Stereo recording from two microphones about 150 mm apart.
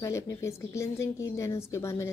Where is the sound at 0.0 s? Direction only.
20° left (ahead or behind).